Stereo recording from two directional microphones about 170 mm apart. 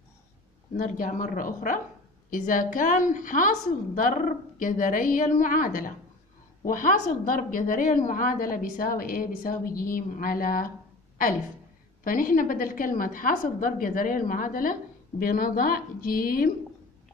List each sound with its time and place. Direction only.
0.7 s a woman's voice: 50° left (ahead or behind)
12.0 s a woman's voice: 55° left (ahead or behind)